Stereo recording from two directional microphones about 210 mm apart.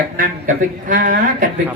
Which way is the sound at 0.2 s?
40° right (ahead or behind).